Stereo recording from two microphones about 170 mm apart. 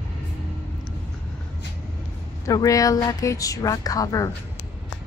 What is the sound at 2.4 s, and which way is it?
Speech, 20° left (ahead or behind).